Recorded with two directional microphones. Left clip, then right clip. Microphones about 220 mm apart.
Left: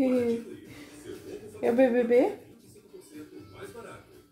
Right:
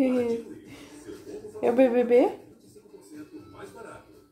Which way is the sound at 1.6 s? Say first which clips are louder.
Right 2 dB; 25° right (ahead or behind).